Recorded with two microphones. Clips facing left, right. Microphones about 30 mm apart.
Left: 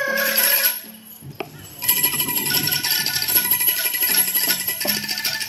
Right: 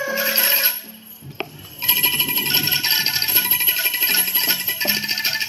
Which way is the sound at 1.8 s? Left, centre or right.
Centre.